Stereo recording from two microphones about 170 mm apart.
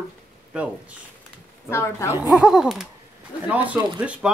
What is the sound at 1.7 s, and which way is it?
Speech, 15° left (ahead or behind).